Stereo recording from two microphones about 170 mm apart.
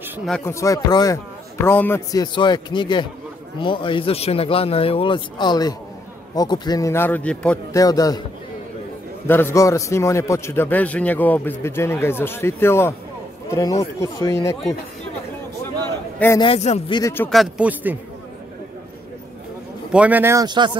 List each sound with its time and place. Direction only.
0.5 s a man's voice: 20° left (ahead or behind)
2.3 s a man's voice: 25° left (ahead or behind); by 7.5 s 10° left (ahead or behind)
7.7 s speech: 20° left (ahead or behind)
9.3 s a man's voice: 15° left (ahead or behind)
16.3 s speech: 35° left (ahead or behind)
17.3 s speech: 5° right (ahead or behind)
19.9 s speech: 10° right (ahead or behind)
20.4 s speech: 25° right (ahead or behind)